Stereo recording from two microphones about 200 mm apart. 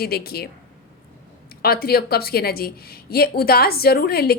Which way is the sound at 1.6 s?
50° left (ahead or behind).